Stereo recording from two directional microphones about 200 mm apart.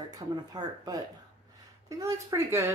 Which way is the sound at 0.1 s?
20° right (ahead or behind).